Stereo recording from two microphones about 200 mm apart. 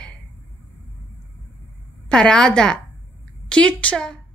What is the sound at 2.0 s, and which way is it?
A woman's voice, 5° left (ahead or behind).